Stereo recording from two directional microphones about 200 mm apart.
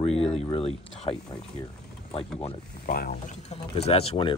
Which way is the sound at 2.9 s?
50° left (ahead or behind).